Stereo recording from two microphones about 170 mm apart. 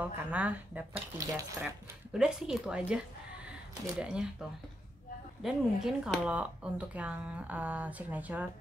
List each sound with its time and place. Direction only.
0.0 s speech: 10° right (ahead or behind)
0.9 s speech: 20° right (ahead or behind)
2.1 s speech: 5° right (ahead or behind)
4.0 s speech: 5° right (ahead or behind)